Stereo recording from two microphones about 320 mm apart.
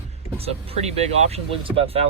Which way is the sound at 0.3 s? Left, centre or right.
Centre.